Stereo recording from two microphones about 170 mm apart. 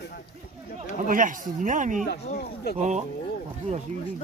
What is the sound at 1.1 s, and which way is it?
Speech, 50° right (ahead or behind).